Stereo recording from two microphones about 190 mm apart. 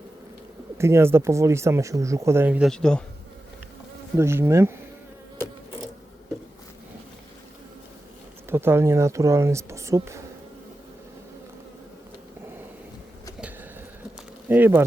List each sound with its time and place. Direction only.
0.8 s speech: 15° right (ahead or behind); by 3.0 s 5° left (ahead or behind)
4.2 s speech: 15° right (ahead or behind)
8.4 s speech: 10° right (ahead or behind)
14.5 s speech: 10° right (ahead or behind)